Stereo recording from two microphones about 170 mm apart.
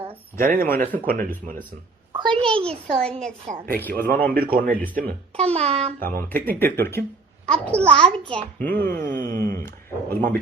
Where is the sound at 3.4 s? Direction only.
55° right (ahead or behind).